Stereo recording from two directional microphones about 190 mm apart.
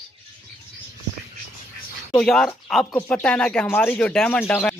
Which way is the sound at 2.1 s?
Centre (ahead or behind).